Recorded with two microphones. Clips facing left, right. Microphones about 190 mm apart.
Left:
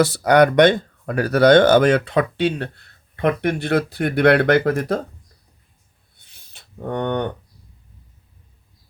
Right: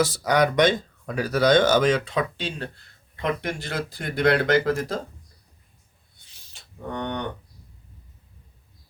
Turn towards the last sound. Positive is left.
turn(degrees=55)  # may be behind; listen again after turning